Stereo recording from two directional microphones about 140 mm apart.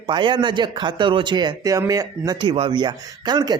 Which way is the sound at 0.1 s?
35° right (ahead or behind).